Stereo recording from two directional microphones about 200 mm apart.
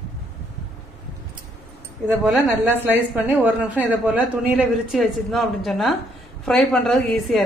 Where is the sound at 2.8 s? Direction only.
10° right (ahead or behind).